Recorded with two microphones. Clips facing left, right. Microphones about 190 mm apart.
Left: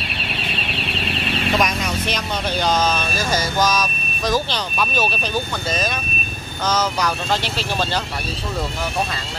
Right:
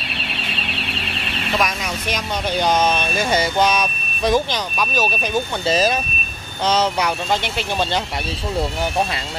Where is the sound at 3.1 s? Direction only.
60° right (ahead or behind).